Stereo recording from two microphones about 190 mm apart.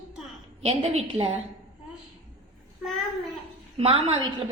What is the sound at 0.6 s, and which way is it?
Speech, 35° right (ahead or behind).